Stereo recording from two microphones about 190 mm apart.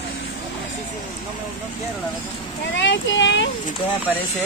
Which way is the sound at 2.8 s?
75° left (ahead or behind).